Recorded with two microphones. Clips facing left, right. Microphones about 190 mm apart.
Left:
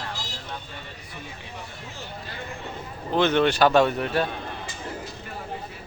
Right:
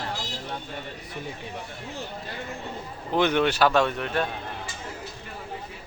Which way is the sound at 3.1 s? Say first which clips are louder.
Left 2 dB; 15° right (ahead or behind).